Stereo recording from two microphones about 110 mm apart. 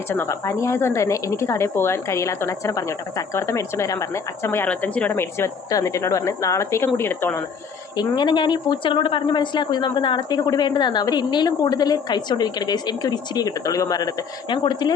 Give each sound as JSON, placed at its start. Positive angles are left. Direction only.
{"t": 0.1, "sound": "speech", "side_deg": 25}
{"t": 7.9, "sound": "speech", "side_deg": 40}
{"t": 14.5, "sound": "speech", "side_deg": 45}